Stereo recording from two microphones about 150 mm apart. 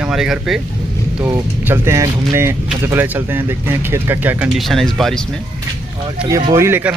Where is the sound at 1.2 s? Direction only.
15° right (ahead or behind).